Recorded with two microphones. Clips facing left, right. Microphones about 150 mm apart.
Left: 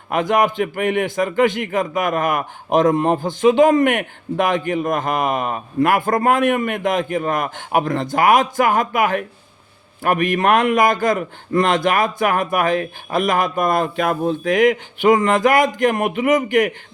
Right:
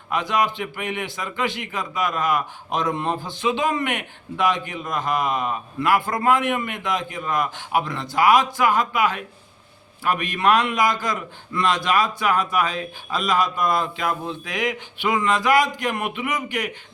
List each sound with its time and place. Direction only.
0.1 s a man's voice: 50° left (ahead or behind)